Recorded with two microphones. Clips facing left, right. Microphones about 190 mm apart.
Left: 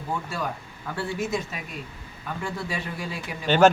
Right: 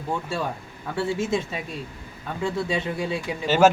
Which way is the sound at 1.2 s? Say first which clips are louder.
Right 3 dB; 25° right (ahead or behind).